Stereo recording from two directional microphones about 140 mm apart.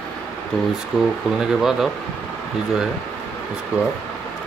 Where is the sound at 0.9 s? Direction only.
5° right (ahead or behind).